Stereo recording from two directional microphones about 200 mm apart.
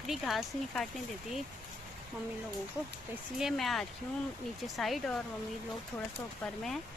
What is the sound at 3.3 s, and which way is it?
A woman's voice, centre (ahead or behind).